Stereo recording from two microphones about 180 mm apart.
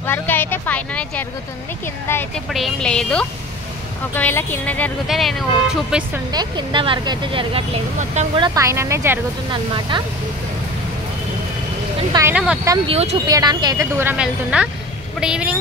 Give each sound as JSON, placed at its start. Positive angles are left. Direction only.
{"t": 0.0, "sound": "a woman's voice", "side_deg": 10}
{"t": 6.3, "sound": "speech", "side_deg": -25}
{"t": 8.4, "sound": "a woman's voice", "side_deg": -15}
{"t": 9.5, "sound": "speech", "side_deg": -25}
{"t": 12.1, "sound": "a woman's voice", "side_deg": -15}
{"t": 12.8, "sound": "speech", "side_deg": -35}
{"t": 13.3, "sound": "a woman's voice", "side_deg": -20}